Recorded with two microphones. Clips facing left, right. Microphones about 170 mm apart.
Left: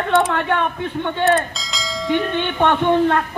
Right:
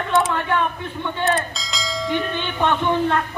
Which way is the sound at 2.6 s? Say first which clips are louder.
Left 3 dB; 60° left (ahead or behind).